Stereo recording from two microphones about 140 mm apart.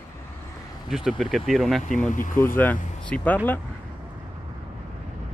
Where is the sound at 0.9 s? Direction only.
Centre (ahead or behind).